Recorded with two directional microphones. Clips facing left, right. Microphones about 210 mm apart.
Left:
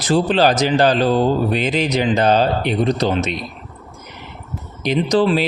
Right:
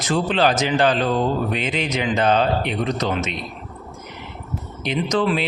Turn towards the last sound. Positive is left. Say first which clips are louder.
# left 5 dB
turn(degrees=35)  # may be behind; listen again after turning